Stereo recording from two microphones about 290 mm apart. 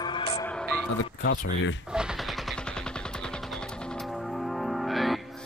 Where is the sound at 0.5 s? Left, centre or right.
Centre.